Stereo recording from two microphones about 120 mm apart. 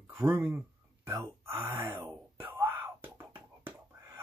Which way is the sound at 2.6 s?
20° right (ahead or behind).